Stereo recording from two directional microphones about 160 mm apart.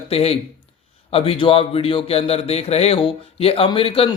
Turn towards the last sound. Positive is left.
turn(degrees=35)  # may be behind; listen again after turning